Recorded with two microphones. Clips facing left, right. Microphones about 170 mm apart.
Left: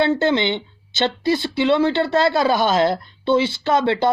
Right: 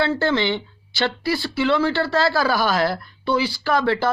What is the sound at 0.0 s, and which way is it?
Speech, 20° left (ahead or behind).